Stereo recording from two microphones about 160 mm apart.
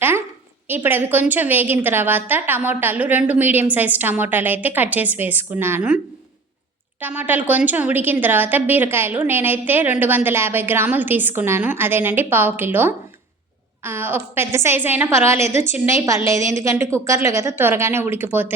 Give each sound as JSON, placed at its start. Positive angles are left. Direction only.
{"t": 0.7, "sound": "a woman's voice", "side_deg": -10}
{"t": 7.0, "sound": "a woman's voice", "side_deg": -10}